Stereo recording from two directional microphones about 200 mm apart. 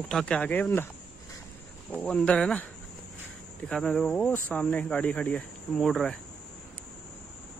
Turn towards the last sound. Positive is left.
turn(degrees=0)  # may be behind; listen again after turning